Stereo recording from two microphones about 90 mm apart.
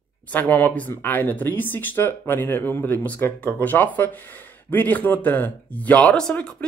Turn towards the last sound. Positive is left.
turn(degrees=10)  # may be behind; listen again after turning